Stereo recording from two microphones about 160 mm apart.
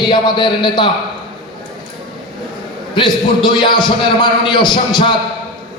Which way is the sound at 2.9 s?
30° left (ahead or behind).